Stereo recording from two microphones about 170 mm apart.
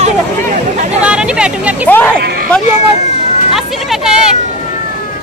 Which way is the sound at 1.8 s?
10° left (ahead or behind).